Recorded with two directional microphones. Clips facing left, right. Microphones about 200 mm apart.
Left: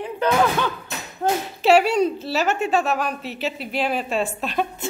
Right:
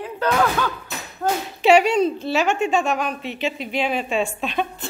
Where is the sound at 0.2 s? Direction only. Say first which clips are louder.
Left 1 dB; 15° left (ahead or behind).